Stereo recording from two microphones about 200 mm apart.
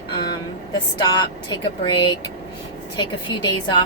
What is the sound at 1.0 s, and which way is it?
A woman's voice, 20° left (ahead or behind).